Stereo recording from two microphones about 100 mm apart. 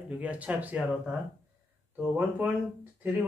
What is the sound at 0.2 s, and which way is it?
Speech, 15° right (ahead or behind).